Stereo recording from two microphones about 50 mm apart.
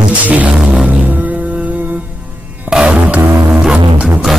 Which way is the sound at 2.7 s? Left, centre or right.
Right.